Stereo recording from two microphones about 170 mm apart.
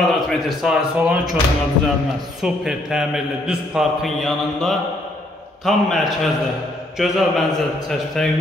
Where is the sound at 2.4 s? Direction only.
5° right (ahead or behind).